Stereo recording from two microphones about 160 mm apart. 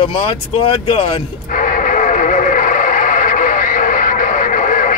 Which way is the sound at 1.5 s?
55° left (ahead or behind).